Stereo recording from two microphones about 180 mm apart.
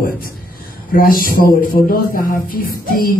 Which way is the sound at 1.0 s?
50° left (ahead or behind).